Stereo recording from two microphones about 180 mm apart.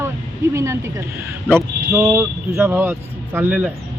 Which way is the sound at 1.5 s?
15° right (ahead or behind).